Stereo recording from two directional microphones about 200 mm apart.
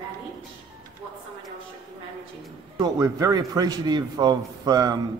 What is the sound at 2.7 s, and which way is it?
A man's voice, 15° right (ahead or behind).